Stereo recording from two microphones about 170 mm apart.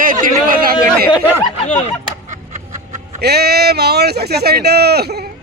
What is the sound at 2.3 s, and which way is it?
Music, 45° right (ahead or behind).